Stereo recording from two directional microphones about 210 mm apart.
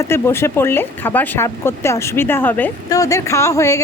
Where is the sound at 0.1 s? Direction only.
10° left (ahead or behind).